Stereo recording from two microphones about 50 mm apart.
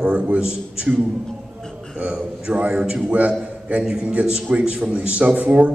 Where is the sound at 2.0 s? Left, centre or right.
Centre.